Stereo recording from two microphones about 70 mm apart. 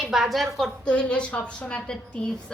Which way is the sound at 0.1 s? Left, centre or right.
Centre.